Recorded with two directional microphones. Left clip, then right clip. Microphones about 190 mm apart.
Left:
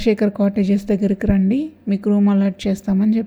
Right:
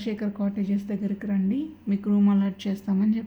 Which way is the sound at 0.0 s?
40° left (ahead or behind).